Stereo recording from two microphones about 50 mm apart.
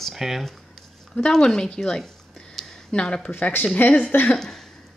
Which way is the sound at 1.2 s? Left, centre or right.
Centre.